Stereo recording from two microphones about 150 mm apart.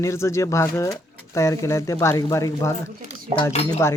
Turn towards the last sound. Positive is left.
turn(degrees=20)  # may be behind; listen again after turning